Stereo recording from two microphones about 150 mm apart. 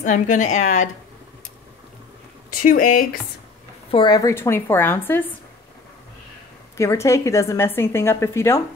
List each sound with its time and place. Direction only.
0.0 s a woman's voice: 55° left (ahead or behind)
2.5 s speech: 65° left (ahead or behind)
3.9 s a woman's voice: 30° left (ahead or behind); by 5.2 s 15° left (ahead or behind)
6.8 s a woman's voice: 20° left (ahead or behind)